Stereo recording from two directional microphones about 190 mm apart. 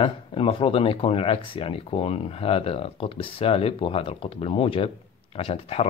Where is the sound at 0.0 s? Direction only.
30° left (ahead or behind).